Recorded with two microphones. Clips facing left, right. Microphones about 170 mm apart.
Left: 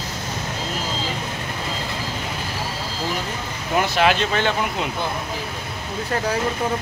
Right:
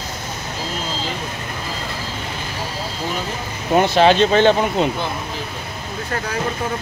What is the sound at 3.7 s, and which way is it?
Speech, 30° right (ahead or behind).